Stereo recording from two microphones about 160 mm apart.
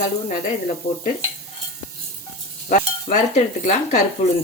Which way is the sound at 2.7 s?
50° left (ahead or behind).